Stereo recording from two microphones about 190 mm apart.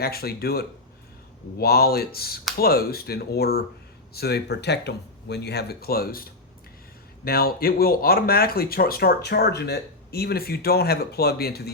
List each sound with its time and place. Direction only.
0.0 s speech: 55° left (ahead or behind)
7.3 s speech: 50° left (ahead or behind)